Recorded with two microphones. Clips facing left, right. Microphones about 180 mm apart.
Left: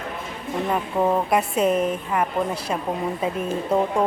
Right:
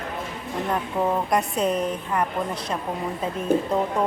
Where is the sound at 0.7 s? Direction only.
5° left (ahead or behind).